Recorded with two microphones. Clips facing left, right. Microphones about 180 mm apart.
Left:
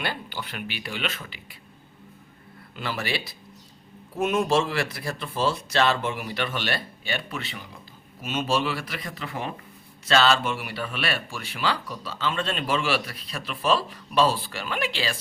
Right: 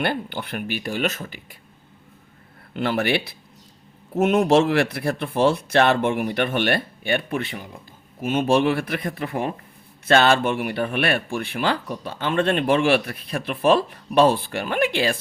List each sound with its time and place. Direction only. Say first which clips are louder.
0.0 s speech: right 7 dB; 55° right (ahead or behind)
2.7 s speech: right 8 dB; 60° right (ahead or behind)